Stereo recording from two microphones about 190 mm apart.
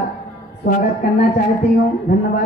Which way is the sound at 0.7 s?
45° left (ahead or behind).